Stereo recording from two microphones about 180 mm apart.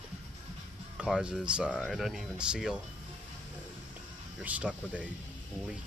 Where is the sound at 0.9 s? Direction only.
5° right (ahead or behind).